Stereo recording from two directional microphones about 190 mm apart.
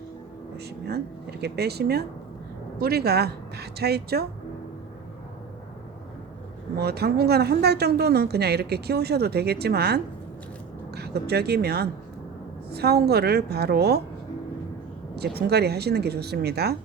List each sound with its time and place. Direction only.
0.5 s speech: 60° right (ahead or behind)
6.7 s speech: 60° right (ahead or behind)
15.1 s speech: 55° right (ahead or behind)